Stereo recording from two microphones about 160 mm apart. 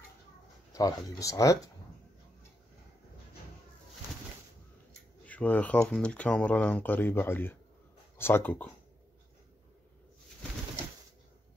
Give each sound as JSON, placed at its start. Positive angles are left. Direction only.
{"t": 0.7, "sound": "speech", "side_deg": 20}
{"t": 5.2, "sound": "speech", "side_deg": 10}